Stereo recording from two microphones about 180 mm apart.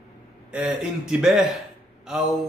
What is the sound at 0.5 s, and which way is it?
A man's voice, 5° right (ahead or behind).